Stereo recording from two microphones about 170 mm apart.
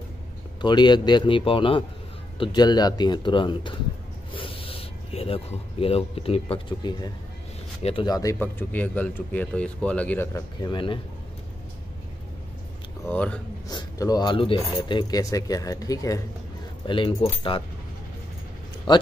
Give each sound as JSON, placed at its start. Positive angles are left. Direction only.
{"t": 0.6, "sound": "speech", "side_deg": 25}
{"t": 13.0, "sound": "speech", "side_deg": 10}
{"t": 13.7, "sound": "speech", "side_deg": 20}
{"t": 18.9, "sound": "speech", "side_deg": 25}